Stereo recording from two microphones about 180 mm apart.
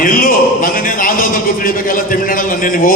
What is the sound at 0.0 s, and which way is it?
A man's voice, 50° left (ahead or behind).